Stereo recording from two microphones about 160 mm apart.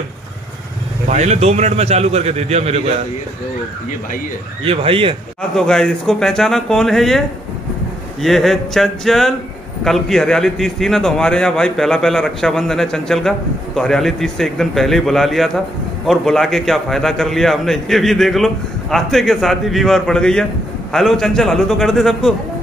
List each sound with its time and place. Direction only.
1.0 s a man's voice: 45° right (ahead or behind)
4.6 s speech: 35° right (ahead or behind)
5.6 s a man's voice: 5° left (ahead or behind)